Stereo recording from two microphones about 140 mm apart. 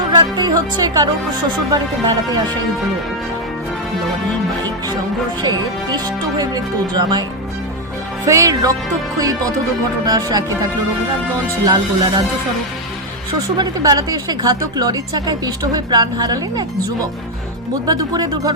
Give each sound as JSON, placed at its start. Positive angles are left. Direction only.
{"t": 0.2, "sound": "speech", "side_deg": -30}
{"t": 5.4, "sound": "speech", "side_deg": -30}
{"t": 13.6, "sound": "speech", "side_deg": -30}
{"t": 17.8, "sound": "speech", "side_deg": -30}